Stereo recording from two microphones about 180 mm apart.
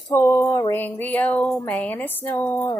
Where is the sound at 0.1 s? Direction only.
15° left (ahead or behind).